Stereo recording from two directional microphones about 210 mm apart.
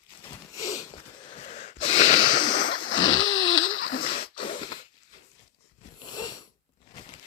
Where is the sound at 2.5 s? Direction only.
65° left (ahead or behind).